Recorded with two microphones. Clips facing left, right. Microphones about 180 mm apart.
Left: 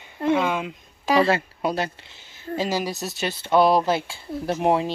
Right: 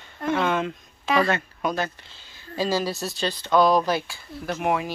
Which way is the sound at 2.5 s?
20° left (ahead or behind).